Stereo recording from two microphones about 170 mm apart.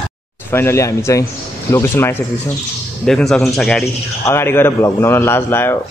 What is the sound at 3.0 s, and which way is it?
Speech, 5° left (ahead or behind).